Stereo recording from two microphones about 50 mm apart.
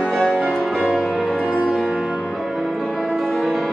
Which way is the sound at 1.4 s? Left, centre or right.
Right.